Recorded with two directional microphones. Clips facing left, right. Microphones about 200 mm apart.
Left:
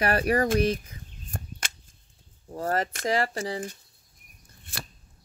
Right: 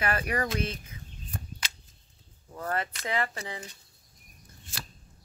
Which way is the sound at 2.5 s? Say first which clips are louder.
Left 5 dB; 35° left (ahead or behind).